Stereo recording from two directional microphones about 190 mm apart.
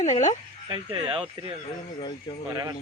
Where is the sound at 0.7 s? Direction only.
25° right (ahead or behind).